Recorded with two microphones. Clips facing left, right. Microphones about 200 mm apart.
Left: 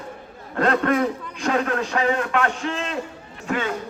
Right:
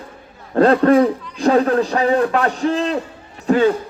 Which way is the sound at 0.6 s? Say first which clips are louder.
Right 8 dB; 35° right (ahead or behind).